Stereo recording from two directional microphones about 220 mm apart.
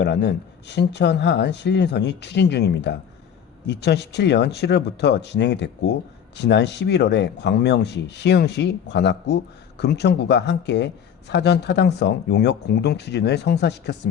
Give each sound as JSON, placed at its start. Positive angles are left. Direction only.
{"t": 0.0, "sound": "speech", "side_deg": 50}